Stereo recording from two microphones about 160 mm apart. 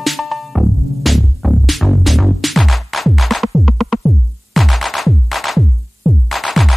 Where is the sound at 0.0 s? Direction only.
Centre (ahead or behind).